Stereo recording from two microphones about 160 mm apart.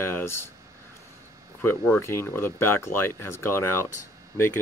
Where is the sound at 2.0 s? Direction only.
15° left (ahead or behind).